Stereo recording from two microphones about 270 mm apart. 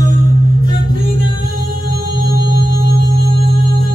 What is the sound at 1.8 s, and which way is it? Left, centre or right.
Music, right.